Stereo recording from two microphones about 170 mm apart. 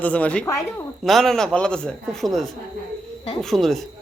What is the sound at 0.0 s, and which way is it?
A man's voice, 10° left (ahead or behind).